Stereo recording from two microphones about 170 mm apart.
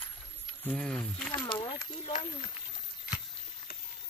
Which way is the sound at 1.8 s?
45° left (ahead or behind).